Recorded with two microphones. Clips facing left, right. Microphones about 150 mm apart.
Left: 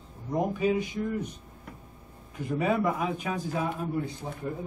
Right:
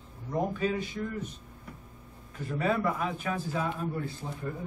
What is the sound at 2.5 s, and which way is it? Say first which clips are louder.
A man's voice: left 2 dB; 15° left (ahead or behind).